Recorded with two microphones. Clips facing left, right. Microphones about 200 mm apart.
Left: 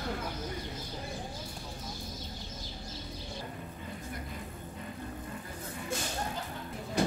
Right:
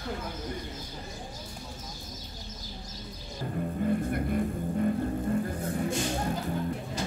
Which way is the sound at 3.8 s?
55° right (ahead or behind).